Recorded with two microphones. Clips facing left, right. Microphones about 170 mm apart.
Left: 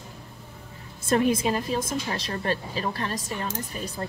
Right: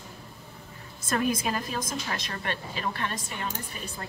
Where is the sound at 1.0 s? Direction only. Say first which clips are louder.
Left 5 dB; 25° left (ahead or behind).